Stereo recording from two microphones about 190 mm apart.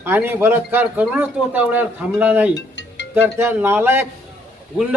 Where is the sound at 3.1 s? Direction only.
10° right (ahead or behind).